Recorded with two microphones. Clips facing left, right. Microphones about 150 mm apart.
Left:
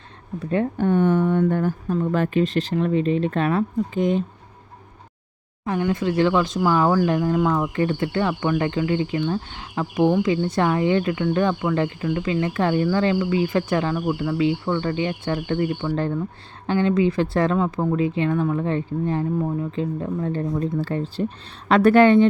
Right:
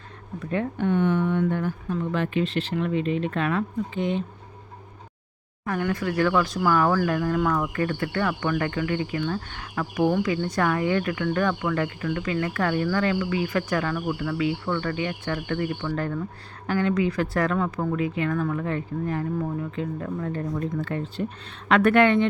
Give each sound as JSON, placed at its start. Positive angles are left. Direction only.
{"t": 0.5, "sound": "speech", "side_deg": 35}
{"t": 5.6, "sound": "speech", "side_deg": 20}